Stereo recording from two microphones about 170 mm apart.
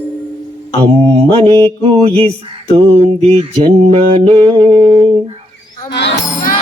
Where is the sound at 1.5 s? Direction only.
30° right (ahead or behind).